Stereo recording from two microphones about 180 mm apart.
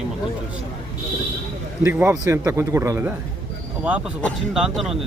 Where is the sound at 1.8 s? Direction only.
15° right (ahead or behind).